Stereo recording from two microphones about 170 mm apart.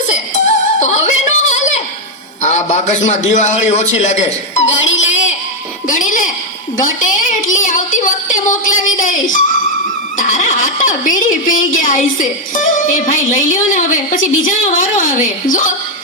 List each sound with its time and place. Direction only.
0.1 s music: 45° left (ahead or behind)
2.4 s a woman's voice: 45° left (ahead or behind)
4.9 s a sound: 45° left (ahead or behind)
5.9 s a woman's voice: 50° left (ahead or behind)
6.7 s music: 50° left (ahead or behind)
10.2 s a woman's voice: 50° left (ahead or behind)